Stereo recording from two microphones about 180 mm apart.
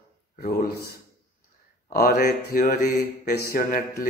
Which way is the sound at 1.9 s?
55° left (ahead or behind).